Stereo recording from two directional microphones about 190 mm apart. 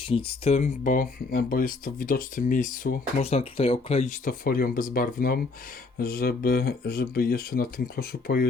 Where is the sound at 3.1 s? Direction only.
35° left (ahead or behind).